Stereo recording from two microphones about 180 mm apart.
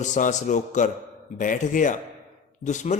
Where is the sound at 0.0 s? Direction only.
45° left (ahead or behind).